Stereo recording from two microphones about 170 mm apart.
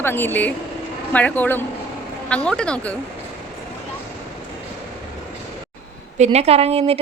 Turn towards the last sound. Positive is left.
turn(degrees=-35)  # may be behind; listen again after turning